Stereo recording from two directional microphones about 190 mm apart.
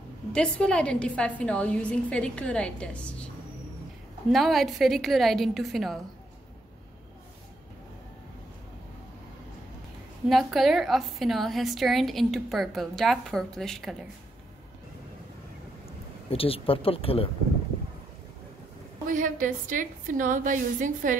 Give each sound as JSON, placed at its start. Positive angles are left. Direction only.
{"t": 0.3, "sound": "a woman's voice", "side_deg": 5}
{"t": 4.3, "sound": "a woman's voice", "side_deg": 0}
{"t": 10.2, "sound": "a woman's voice", "side_deg": 0}
{"t": 16.3, "sound": "speech", "side_deg": 30}
{"t": 19.0, "sound": "a woman's voice", "side_deg": -45}